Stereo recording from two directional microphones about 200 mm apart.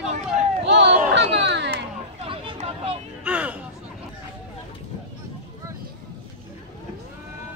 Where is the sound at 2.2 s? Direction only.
30° right (ahead or behind).